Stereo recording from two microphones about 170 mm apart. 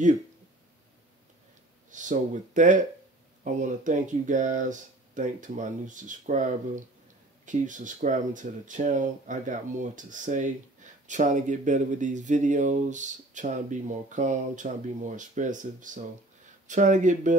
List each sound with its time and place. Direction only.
1.9 s speech: 50° right (ahead or behind)